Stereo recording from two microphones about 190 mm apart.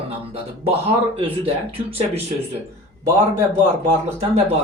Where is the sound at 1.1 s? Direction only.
30° right (ahead or behind).